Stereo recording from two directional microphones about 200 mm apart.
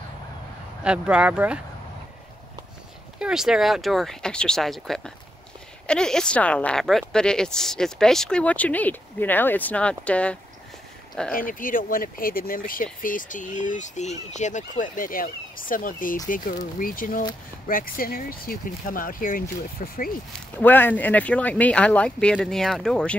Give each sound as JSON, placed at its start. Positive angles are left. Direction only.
{"t": 0.8, "sound": "a woman's voice", "side_deg": -5}
{"t": 3.2, "sound": "a woman's voice", "side_deg": -5}
{"t": 11.3, "sound": "speech", "side_deg": 45}
{"t": 20.3, "sound": "speech", "side_deg": 10}